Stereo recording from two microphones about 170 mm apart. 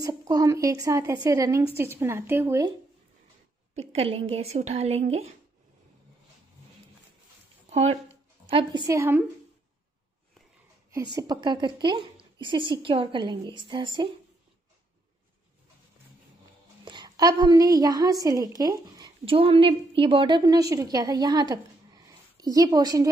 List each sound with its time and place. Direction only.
0.0 s a woman's voice: 20° right (ahead or behind)
3.7 s a woman's voice: 40° right (ahead or behind)
7.7 s a woman's voice: 40° right (ahead or behind)
8.8 s a woman's voice: 15° right (ahead or behind)
11.1 s a woman's voice: 25° right (ahead or behind)
16.8 s a woman's voice: 25° right (ahead or behind)